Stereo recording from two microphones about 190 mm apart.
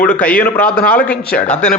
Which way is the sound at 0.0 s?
10° left (ahead or behind).